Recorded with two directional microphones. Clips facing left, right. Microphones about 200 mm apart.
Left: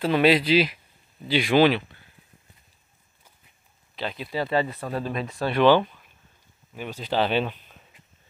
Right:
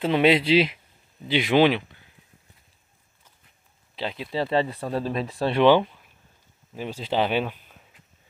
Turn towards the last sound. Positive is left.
turn(degrees=-10)  # may be behind; listen again after turning